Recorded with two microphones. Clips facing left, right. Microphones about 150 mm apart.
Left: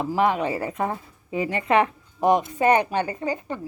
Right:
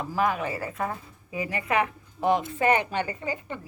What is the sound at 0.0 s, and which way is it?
A woman's voice, 25° left (ahead or behind).